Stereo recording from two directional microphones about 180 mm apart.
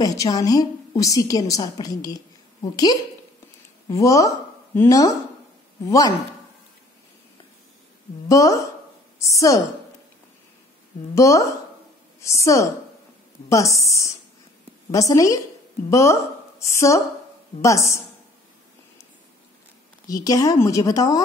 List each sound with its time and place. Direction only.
0.0 s a woman's voice: 20° left (ahead or behind)
8.3 s a woman's voice: 20° left (ahead or behind)
11.1 s a woman's voice: 15° left (ahead or behind)
20.1 s a woman's voice: 20° left (ahead or behind)